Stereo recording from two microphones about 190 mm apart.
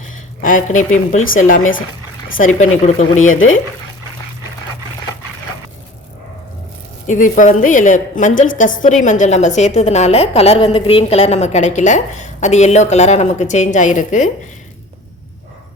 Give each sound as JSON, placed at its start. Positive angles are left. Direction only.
{"t": 0.4, "sound": "a woman's voice", "side_deg": 45}
{"t": 7.1, "sound": "a woman's voice", "side_deg": 40}